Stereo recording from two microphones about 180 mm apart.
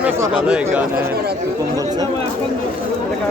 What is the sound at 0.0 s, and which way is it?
Speech, 5° right (ahead or behind).